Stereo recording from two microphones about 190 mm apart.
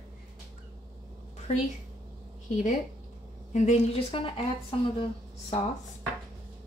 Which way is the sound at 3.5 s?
35° left (ahead or behind).